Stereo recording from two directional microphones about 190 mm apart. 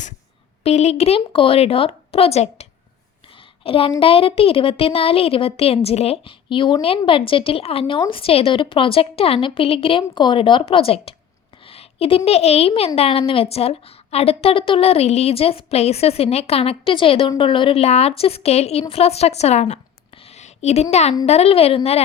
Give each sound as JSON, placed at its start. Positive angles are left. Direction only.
{"t": 0.6, "sound": "a woman's voice", "side_deg": 35}
{"t": 20.3, "sound": "a sound", "side_deg": 35}
{"t": 20.9, "sound": "a woman's voice", "side_deg": 35}